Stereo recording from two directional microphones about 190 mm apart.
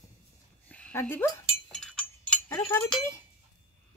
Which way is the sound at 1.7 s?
5° left (ahead or behind).